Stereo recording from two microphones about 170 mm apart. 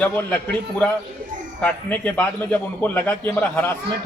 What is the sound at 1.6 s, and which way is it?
A man's voice, 10° left (ahead or behind).